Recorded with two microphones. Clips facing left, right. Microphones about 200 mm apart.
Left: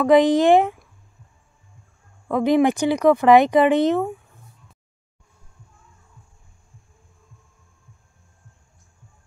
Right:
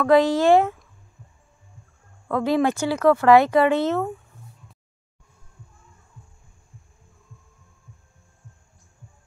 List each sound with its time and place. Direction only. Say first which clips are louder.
0.0 s speech: left 2 dB; 20° left (ahead or behind)
2.2 s speech: left 3 dB; 15° left (ahead or behind)